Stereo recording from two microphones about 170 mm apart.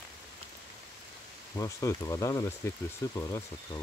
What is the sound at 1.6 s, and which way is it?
Speech, 20° left (ahead or behind).